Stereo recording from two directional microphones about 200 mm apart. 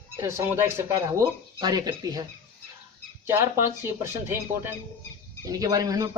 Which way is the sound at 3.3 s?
15° right (ahead or behind).